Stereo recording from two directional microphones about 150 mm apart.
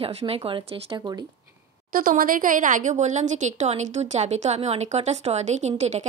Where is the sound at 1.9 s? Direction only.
70° right (ahead or behind).